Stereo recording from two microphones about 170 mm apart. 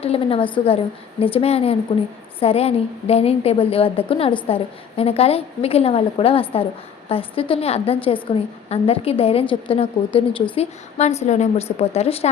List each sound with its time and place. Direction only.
0.0 s a woman's voice: 35° left (ahead or behind)